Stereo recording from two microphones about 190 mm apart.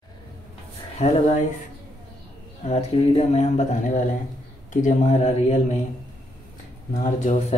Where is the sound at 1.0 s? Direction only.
35° left (ahead or behind).